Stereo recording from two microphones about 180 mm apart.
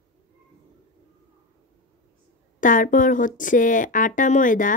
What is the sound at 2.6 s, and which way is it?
Speech, 45° left (ahead or behind).